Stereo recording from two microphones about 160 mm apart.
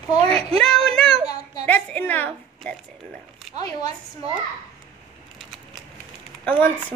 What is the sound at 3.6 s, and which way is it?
Speech, 25° left (ahead or behind).